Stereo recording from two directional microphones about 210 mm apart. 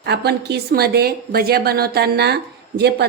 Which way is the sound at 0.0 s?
50° right (ahead or behind).